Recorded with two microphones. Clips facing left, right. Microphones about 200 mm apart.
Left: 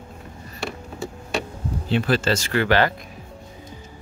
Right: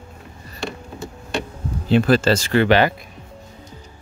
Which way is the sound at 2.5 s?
20° right (ahead or behind).